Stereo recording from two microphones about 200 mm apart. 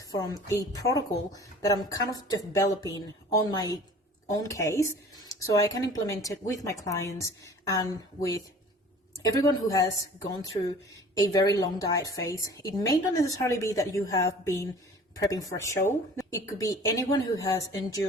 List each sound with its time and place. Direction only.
0.0 s a woman's voice: 20° left (ahead or behind)
11.1 s a woman's voice: 15° left (ahead or behind)